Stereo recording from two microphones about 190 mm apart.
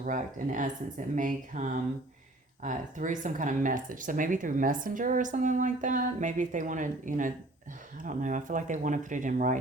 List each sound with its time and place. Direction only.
0.0 s speech: 45° right (ahead or behind)